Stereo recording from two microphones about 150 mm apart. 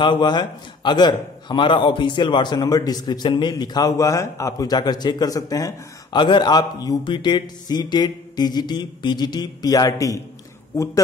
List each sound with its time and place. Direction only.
0.0 s a man's voice: 30° left (ahead or behind)